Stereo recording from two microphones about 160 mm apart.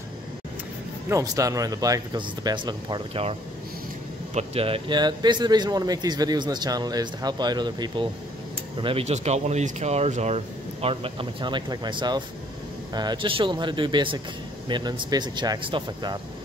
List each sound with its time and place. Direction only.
1.0 s speech: 20° right (ahead or behind)